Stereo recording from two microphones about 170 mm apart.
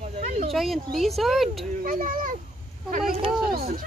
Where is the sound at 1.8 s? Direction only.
50° right (ahead or behind).